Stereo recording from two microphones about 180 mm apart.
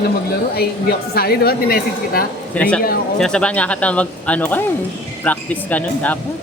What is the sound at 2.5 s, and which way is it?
Speech, 5° left (ahead or behind).